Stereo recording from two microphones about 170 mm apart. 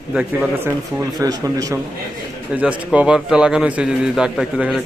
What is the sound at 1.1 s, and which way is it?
Speech, 20° right (ahead or behind).